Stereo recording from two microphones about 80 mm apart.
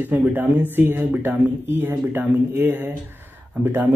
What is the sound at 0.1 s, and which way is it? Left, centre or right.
Speech, right.